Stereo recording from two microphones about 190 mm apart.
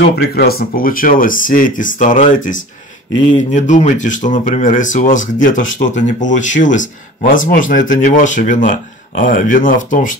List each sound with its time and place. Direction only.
0.0 s speech: 55° left (ahead or behind)